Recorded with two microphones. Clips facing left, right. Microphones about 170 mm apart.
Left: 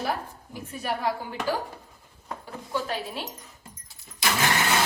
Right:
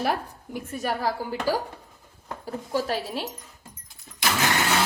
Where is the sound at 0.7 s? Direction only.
40° right (ahead or behind).